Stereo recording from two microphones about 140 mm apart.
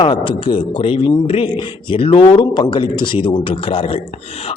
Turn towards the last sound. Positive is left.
turn(degrees=45)  # may be behind; listen again after turning